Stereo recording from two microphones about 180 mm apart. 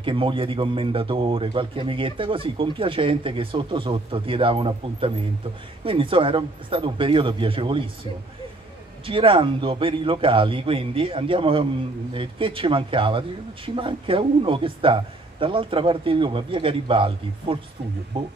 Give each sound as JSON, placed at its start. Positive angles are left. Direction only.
{"t": 0.0, "sound": "speech", "side_deg": -30}